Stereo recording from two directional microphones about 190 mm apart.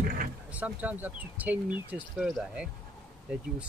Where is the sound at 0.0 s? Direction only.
50° right (ahead or behind).